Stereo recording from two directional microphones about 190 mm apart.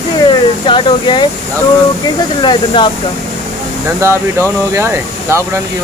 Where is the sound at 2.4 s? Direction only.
25° left (ahead or behind).